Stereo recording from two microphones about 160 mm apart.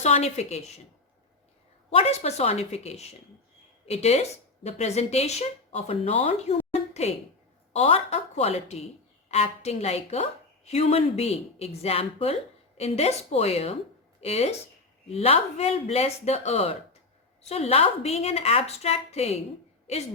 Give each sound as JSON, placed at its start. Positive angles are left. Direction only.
{"t": 0.0, "sound": "a woman's voice", "side_deg": 40}
{"t": 1.9, "sound": "a woman's voice", "side_deg": 40}